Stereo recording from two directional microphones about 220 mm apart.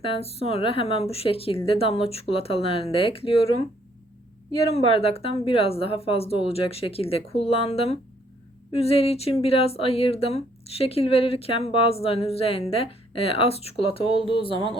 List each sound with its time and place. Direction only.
0.0 s speech: 25° left (ahead or behind)
4.9 s speech: 25° left (ahead or behind)